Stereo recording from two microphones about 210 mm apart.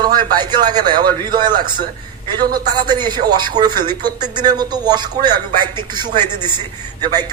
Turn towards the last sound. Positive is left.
turn(degrees=-20)  # may be behind; listen again after turning